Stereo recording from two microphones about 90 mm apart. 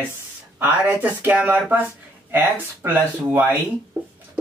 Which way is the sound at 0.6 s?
20° right (ahead or behind).